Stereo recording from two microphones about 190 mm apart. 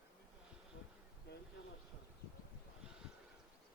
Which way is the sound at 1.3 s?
60° left (ahead or behind).